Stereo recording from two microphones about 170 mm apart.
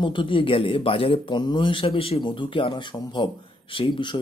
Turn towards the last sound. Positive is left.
turn(degrees=30)  # may be behind; listen again after turning